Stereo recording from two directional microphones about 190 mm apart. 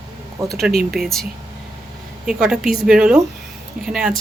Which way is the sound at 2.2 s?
5° right (ahead or behind).